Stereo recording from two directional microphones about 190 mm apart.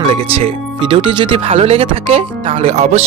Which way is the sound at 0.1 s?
30° right (ahead or behind).